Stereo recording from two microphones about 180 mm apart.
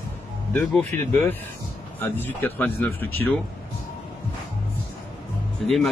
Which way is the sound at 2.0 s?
10° left (ahead or behind).